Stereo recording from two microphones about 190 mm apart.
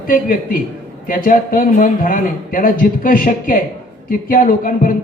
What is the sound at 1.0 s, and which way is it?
A man's voice, 45° left (ahead or behind).